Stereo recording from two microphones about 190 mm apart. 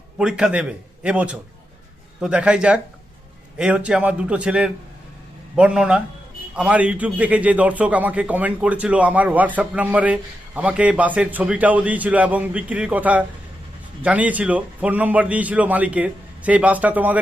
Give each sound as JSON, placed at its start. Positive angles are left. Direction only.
{"t": 0.2, "sound": "a man's voice", "side_deg": -5}